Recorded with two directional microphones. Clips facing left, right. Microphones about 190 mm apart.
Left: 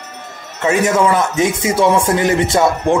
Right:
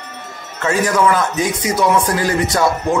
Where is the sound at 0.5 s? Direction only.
25° left (ahead or behind).